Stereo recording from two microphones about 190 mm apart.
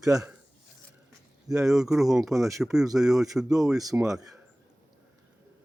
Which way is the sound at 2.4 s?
15° right (ahead or behind).